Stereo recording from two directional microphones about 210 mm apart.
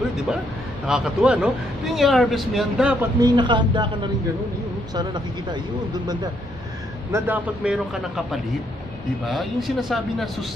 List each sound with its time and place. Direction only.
0.8 s speech: centre (ahead or behind)
3.2 s speech: 20° right (ahead or behind)
4.9 s speech: 20° right (ahead or behind)
7.1 s a man's voice: 10° right (ahead or behind)